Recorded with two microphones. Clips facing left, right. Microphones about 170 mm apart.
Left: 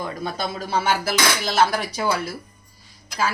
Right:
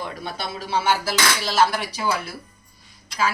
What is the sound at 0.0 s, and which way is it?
Speech, 45° left (ahead or behind).